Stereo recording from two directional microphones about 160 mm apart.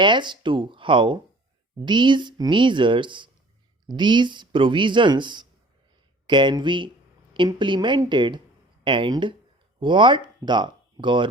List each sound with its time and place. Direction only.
0.0 s speech: 30° right (ahead or behind)